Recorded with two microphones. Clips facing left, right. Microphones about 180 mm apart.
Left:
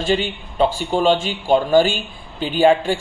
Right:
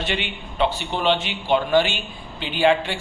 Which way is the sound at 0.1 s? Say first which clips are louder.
Left 8 dB; 45° left (ahead or behind).